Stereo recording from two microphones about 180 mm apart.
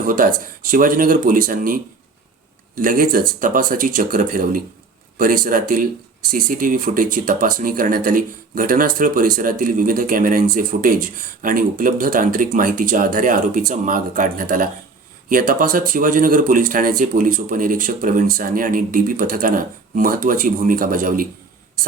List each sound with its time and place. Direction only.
0.1 s speech: 50° right (ahead or behind)